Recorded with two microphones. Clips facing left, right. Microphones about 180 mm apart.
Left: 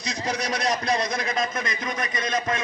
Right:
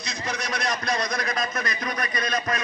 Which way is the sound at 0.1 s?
35° left (ahead or behind).